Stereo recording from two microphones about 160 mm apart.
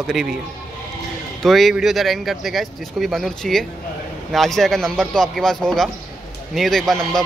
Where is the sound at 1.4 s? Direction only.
Centre (ahead or behind).